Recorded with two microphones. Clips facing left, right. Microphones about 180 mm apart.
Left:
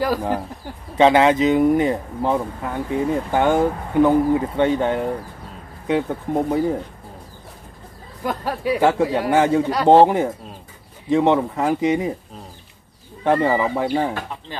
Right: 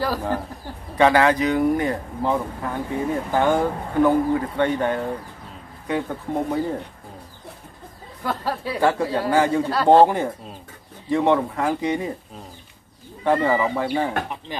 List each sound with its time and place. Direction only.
0.0 s speech: 15° left (ahead or behind)
8.3 s speech: 15° left (ahead or behind)
13.2 s speech: 20° left (ahead or behind)
14.5 s speech: 15° right (ahead or behind)